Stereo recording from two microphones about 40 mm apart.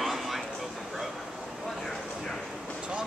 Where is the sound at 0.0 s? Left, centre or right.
Centre.